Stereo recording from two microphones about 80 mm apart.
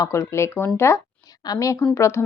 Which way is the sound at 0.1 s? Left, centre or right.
Left.